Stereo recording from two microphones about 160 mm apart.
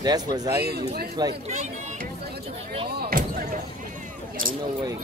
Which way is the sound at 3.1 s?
65° right (ahead or behind).